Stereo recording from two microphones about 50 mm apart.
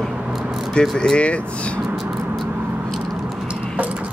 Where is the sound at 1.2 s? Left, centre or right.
Left.